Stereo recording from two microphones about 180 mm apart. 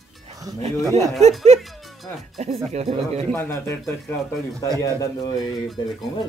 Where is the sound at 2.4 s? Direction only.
40° right (ahead or behind).